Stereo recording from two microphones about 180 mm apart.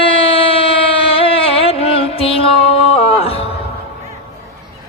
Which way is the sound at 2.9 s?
35° left (ahead or behind).